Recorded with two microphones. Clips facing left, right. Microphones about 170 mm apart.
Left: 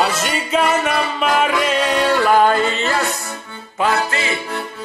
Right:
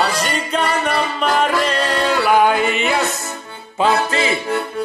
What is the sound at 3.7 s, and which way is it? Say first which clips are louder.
Music: right 2 dB; 30° right (ahead or behind).